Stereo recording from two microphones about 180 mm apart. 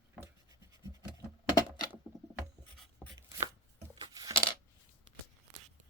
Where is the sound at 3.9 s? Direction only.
25° right (ahead or behind).